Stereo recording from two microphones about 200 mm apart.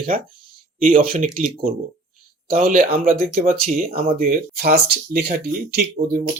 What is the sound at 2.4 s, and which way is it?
Speech, 45° right (ahead or behind).